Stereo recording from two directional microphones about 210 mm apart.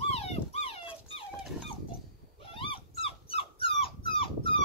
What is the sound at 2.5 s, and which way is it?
Dog, 25° left (ahead or behind).